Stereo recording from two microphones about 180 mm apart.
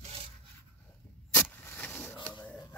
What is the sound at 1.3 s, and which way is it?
Vehicle, 10° left (ahead or behind).